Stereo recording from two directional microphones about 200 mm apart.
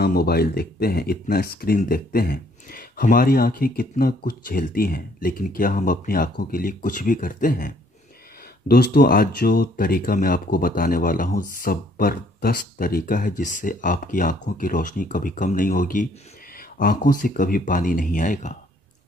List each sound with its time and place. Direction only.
0.0 s speech: 50° left (ahead or behind)